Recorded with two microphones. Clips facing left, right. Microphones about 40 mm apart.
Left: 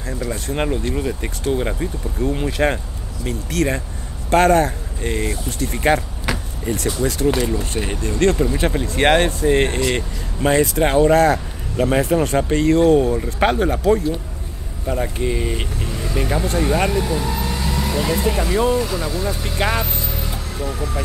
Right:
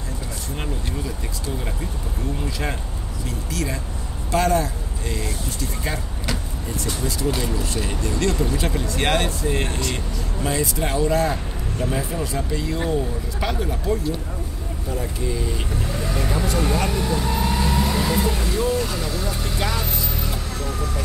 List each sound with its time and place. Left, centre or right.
0.5 s speech: left
16.2 s speech: left
16.9 s vehicle: centre
18.8 s speech: centre
19.8 s vehicle: centre